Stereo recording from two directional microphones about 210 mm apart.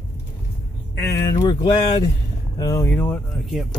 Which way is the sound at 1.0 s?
50° left (ahead or behind).